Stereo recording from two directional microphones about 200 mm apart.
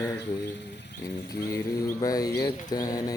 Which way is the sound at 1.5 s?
20° left (ahead or behind).